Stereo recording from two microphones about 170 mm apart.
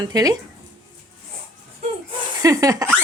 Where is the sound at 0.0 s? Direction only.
20° right (ahead or behind).